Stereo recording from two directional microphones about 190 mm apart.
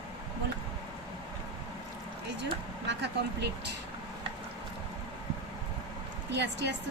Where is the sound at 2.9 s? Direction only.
60° right (ahead or behind).